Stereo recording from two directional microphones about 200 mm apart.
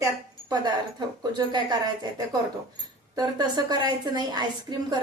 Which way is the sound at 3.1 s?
20° right (ahead or behind).